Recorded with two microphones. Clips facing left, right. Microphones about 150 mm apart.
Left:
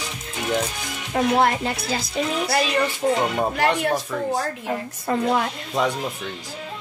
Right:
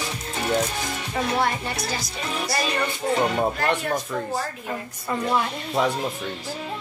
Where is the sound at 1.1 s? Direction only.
70° left (ahead or behind).